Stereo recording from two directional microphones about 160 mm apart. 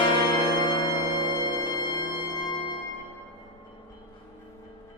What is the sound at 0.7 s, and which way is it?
Music, 30° left (ahead or behind).